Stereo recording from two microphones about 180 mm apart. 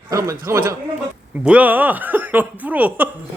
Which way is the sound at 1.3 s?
5° right (ahead or behind).